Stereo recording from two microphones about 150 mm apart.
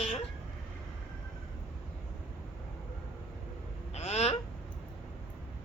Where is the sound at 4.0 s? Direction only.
45° left (ahead or behind).